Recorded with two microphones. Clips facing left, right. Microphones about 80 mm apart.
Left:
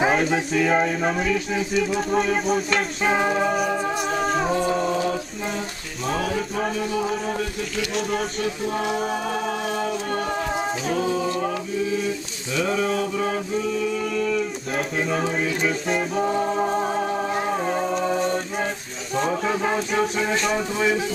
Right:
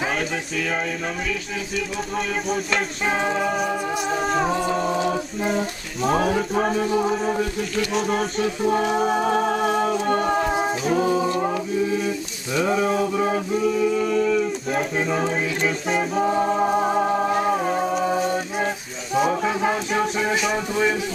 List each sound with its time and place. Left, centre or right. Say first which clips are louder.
0.2 s music: left 5 dB; centre
2.1 s music: left 3 dB; centre
4.9 s a sound: right 1 dB; centre
7.9 s music: right 2 dB; centre
8.7 s music: right 6 dB; right
10.5 s music: right 3 dB; centre
12.5 s a sound: right 2 dB; centre
14.7 s music: left 1 dB; centre